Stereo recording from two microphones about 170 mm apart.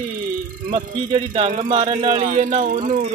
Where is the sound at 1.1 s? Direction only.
35° right (ahead or behind).